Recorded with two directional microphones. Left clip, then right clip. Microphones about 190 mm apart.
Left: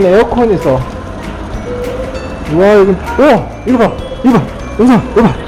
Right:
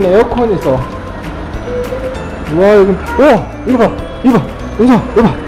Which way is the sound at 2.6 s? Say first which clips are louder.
Even; centre (ahead or behind).